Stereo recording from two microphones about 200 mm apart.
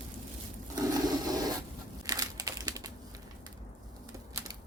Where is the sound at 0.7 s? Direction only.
20° right (ahead or behind).